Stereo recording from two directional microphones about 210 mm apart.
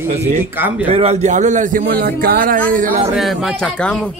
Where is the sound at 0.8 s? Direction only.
30° right (ahead or behind).